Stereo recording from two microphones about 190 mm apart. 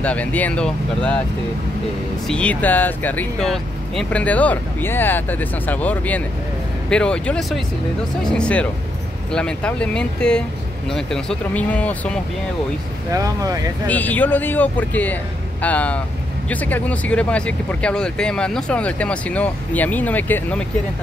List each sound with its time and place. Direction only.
0.0 s speech: 5° left (ahead or behind)
2.2 s speech: 5° left (ahead or behind)
13.1 s speech: 15° right (ahead or behind)
13.8 s speech: 10° left (ahead or behind)